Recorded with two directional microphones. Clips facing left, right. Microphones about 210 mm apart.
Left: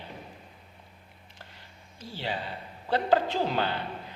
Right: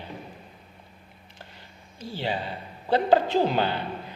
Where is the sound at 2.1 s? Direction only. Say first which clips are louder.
Right 4 dB; 20° right (ahead or behind).